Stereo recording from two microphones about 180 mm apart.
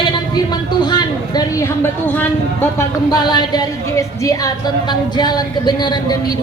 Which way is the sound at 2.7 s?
20° left (ahead or behind).